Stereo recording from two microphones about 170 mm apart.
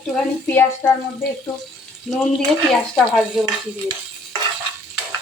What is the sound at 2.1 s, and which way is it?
Speech, centre (ahead or behind).